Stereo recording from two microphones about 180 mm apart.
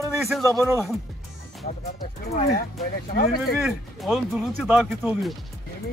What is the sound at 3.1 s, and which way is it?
Speech, 60° left (ahead or behind).